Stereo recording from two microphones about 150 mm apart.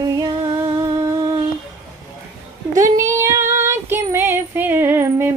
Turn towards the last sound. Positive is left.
turn(degrees=-15)  # may be behind; listen again after turning